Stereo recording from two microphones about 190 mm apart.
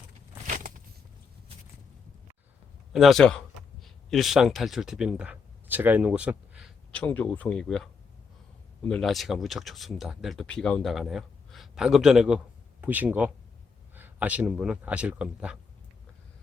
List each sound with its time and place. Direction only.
0.4 s a sound: 45° right (ahead or behind)
2.9 s speech: centre (ahead or behind)
6.9 s speech: 10° left (ahead or behind)
8.9 s speech: centre (ahead or behind)